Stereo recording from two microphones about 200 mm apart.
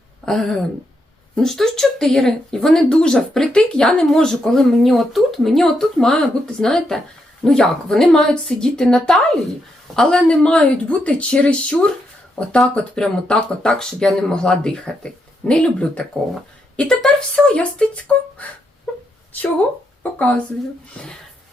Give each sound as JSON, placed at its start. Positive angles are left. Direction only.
{"t": 0.3, "sound": "speech", "side_deg": 0}
{"t": 20.0, "sound": "a woman's voice", "side_deg": 5}